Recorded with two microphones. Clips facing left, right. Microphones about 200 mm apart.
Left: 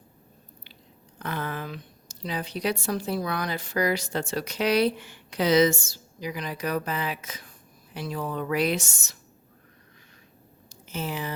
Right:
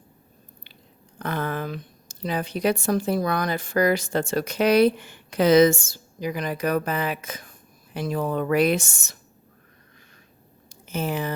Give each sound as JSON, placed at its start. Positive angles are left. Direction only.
{"t": 1.2, "sound": "a woman's voice", "side_deg": -50}
{"t": 10.8, "sound": "speech", "side_deg": -50}